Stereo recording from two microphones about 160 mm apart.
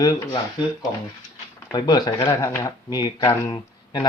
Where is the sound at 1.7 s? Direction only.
25° left (ahead or behind).